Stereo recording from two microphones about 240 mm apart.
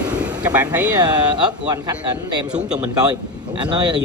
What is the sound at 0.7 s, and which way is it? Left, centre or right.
A man's voice, centre.